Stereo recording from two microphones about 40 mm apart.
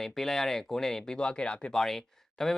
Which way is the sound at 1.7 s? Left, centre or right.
Centre.